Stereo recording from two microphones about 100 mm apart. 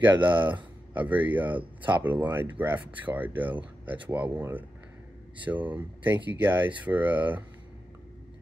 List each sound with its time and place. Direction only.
0.0 s speech: 20° right (ahead or behind)